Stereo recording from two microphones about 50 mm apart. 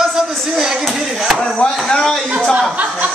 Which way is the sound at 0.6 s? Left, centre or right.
Centre.